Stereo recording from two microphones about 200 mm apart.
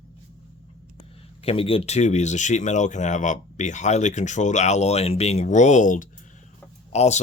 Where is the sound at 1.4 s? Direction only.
30° left (ahead or behind).